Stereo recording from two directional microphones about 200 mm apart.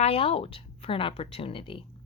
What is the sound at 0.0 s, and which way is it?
A woman's voice, 30° left (ahead or behind).